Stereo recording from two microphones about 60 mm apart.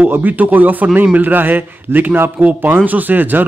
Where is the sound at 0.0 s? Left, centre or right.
Right.